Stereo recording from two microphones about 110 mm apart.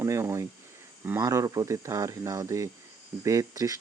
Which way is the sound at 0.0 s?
25° right (ahead or behind).